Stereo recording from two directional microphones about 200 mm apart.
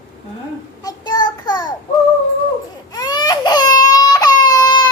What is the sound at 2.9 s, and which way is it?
Baby cry, 20° left (ahead or behind).